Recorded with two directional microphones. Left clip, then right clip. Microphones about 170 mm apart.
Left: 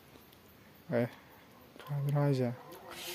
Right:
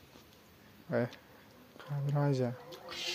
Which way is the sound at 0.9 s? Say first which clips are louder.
Left 1 dB; 20° left (ahead or behind).